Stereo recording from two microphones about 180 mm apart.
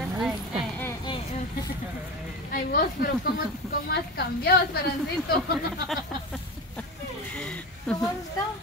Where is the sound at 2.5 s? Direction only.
50° left (ahead or behind).